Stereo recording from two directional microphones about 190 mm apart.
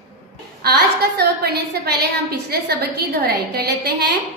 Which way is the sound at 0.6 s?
55° right (ahead or behind).